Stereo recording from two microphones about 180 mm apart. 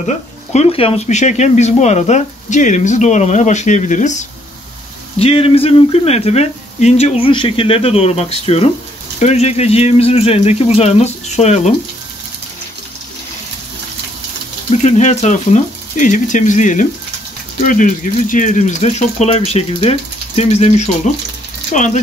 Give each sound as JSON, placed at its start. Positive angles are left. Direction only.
{"t": 0.0, "sound": "speech", "side_deg": 40}
{"t": 14.8, "sound": "speech", "side_deg": 40}